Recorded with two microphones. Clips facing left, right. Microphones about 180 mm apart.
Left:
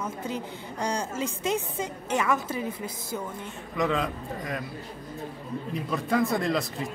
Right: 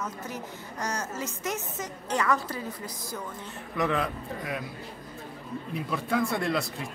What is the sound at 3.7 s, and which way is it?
Speech, 5° right (ahead or behind).